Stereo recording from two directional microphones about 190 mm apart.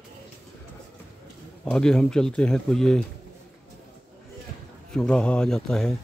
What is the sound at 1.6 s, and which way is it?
Speech, 5° left (ahead or behind).